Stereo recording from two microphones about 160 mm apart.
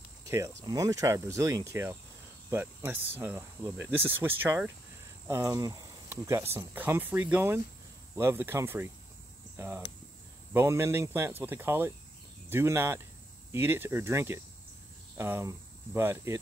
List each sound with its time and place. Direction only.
0.7 s speech: 20° right (ahead or behind)